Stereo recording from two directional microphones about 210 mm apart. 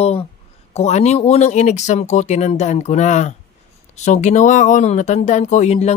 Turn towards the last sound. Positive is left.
turn(degrees=30)  # may be behind; listen again after turning